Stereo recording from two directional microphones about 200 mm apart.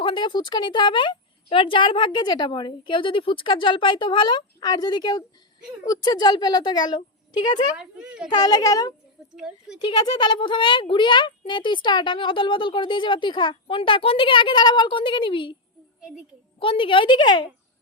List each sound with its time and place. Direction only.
0.0 s speech: 25° left (ahead or behind)
7.8 s a child's voice: 5° right (ahead or behind)
8.3 s speech: 20° left (ahead or behind)
9.3 s a child's voice: centre (ahead or behind)
9.7 s speech: 20° left (ahead or behind)
16.0 s a woman's voice: 5° right (ahead or behind)
16.6 s speech: 25° left (ahead or behind)